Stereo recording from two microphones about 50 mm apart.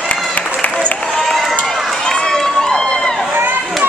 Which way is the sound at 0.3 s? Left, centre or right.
Left.